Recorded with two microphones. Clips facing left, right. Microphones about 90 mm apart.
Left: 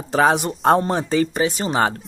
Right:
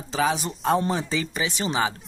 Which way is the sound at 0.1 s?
60° left (ahead or behind).